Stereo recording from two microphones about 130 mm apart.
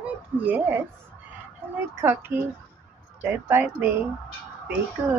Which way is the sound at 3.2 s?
15° right (ahead or behind).